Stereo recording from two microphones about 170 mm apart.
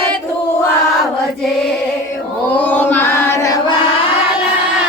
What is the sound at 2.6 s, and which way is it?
Chant, 10° left (ahead or behind).